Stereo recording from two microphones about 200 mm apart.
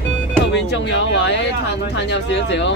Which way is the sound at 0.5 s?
60° left (ahead or behind).